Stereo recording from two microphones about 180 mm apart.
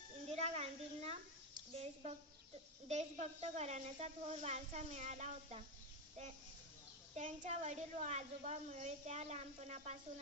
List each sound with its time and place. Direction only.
0.3 s a sound: 35° right (ahead or behind)
1.7 s a woman's voice: 35° right (ahead or behind)
7.2 s a woman's voice: 40° right (ahead or behind)